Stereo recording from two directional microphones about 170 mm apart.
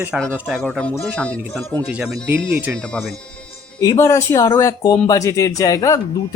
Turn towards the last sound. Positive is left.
turn(degrees=20)  # may be behind; listen again after turning